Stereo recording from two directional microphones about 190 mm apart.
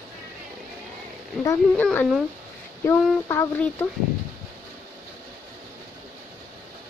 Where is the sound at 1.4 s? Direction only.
10° left (ahead or behind).